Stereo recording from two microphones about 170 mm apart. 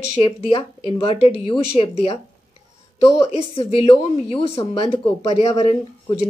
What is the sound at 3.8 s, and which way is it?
Speech, 35° left (ahead or behind).